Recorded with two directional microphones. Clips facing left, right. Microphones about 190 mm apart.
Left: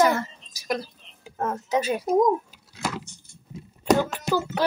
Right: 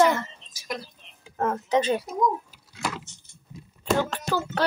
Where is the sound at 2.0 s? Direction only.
50° left (ahead or behind).